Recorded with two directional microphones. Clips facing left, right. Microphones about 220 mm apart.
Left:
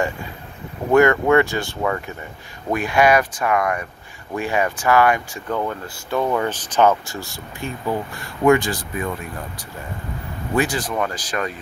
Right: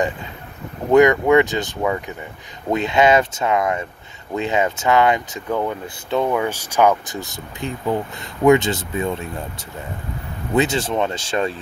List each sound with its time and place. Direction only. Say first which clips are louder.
0.9 s speech: right 2 dB; 15° right (ahead or behind)
10.5 s speech: right 3 dB; 20° right (ahead or behind)